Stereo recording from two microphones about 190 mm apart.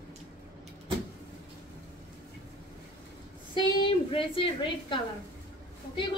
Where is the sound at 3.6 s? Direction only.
25° left (ahead or behind).